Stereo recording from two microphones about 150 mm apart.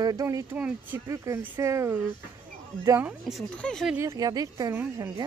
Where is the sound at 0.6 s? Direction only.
10° right (ahead or behind).